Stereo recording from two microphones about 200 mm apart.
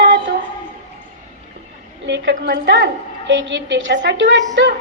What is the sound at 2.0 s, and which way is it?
A woman's voice, 65° right (ahead or behind).